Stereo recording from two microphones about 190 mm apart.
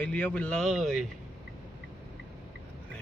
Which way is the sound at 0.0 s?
5° left (ahead or behind).